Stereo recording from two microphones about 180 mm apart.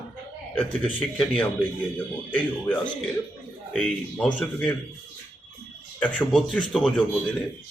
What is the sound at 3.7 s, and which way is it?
A man's voice, centre (ahead or behind).